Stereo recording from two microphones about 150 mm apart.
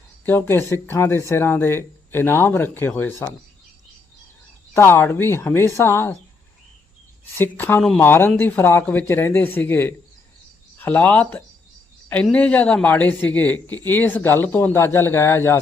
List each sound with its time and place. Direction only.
0.3 s a man's voice: 15° left (ahead or behind)
4.7 s a man's voice: 15° left (ahead or behind)
7.3 s a man's voice: 15° left (ahead or behind)